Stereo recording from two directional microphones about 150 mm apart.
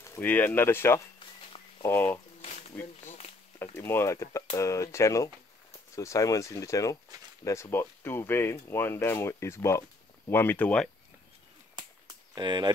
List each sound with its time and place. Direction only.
0.0 s speech: 15° left (ahead or behind)
3.7 s speech: 15° left (ahead or behind)
12.4 s speech: 30° right (ahead or behind)